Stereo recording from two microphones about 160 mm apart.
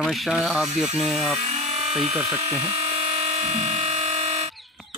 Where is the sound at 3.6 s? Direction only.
40° right (ahead or behind).